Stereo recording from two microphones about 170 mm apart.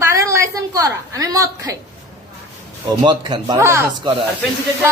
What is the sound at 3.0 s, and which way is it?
A woman's voice, 25° right (ahead or behind).